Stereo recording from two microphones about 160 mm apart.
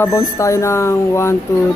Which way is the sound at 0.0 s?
20° left (ahead or behind).